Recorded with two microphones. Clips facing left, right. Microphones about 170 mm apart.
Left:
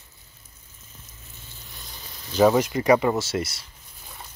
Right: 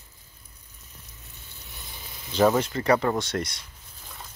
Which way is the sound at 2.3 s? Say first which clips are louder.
Left 3 dB; 10° left (ahead or behind).